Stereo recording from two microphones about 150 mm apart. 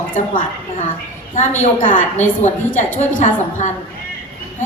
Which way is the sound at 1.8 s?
60° left (ahead or behind).